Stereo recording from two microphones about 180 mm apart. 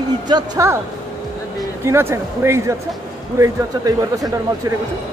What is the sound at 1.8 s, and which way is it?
Speech, 15° right (ahead or behind).